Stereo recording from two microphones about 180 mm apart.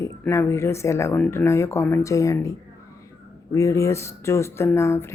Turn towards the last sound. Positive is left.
turn(degrees=15)  # may be behind; listen again after turning